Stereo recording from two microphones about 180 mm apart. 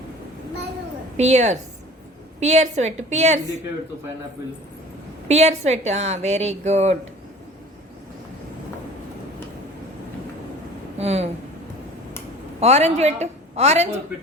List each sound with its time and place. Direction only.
1.1 s a woman's voice: 40° right (ahead or behind)
5.3 s a woman's voice: 40° right (ahead or behind)
10.9 s speech: 35° right (ahead or behind)
12.5 s a woman's voice: 35° right (ahead or behind)